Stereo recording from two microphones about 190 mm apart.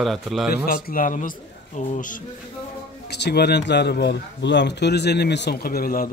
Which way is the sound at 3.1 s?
60° left (ahead or behind).